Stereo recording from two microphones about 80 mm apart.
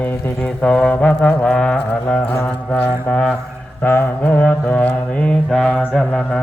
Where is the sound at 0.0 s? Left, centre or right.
Centre.